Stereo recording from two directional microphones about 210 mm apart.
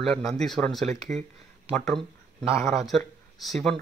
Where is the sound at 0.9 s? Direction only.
35° right (ahead or behind).